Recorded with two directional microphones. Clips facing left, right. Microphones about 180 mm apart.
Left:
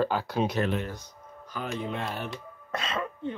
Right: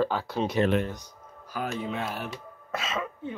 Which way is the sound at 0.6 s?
15° right (ahead or behind).